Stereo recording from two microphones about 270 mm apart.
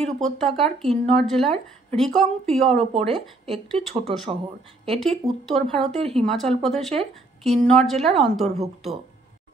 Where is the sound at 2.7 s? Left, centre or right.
Right.